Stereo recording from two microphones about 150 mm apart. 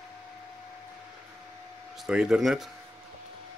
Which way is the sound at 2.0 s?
5° right (ahead or behind).